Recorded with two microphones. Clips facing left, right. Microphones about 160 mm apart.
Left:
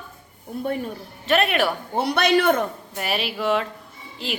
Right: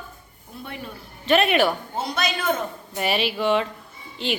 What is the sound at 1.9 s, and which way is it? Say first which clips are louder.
Speech: left 7 dB; 65° left (ahead or behind).